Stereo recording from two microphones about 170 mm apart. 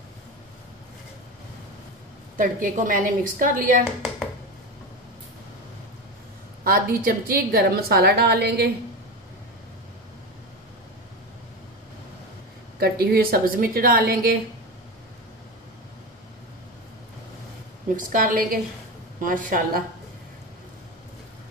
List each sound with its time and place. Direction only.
2.3 s a woman's voice: 50° right (ahead or behind)
6.6 s a woman's voice: 60° right (ahead or behind)
12.8 s a woman's voice: 65° right (ahead or behind)
17.9 s a woman's voice: 55° right (ahead or behind)